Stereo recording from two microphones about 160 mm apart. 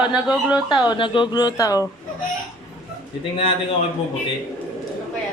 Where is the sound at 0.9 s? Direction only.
30° left (ahead or behind).